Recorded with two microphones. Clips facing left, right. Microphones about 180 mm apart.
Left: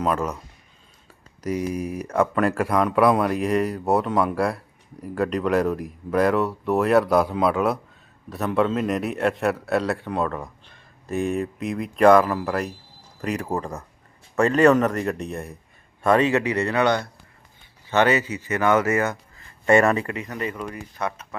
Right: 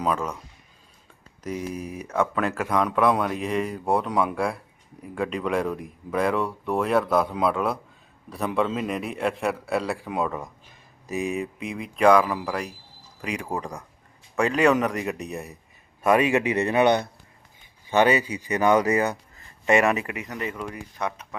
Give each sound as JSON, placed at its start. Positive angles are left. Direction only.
{"t": 0.0, "sound": "speech", "side_deg": 5}
{"t": 1.6, "sound": "speech", "side_deg": 10}
{"t": 16.0, "sound": "speech", "side_deg": -10}
{"t": 19.7, "sound": "speech", "side_deg": -5}
{"t": 20.0, "sound": "speech", "side_deg": -20}